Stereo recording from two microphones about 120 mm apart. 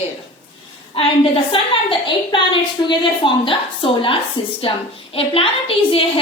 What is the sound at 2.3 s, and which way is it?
A woman's voice, 40° left (ahead or behind).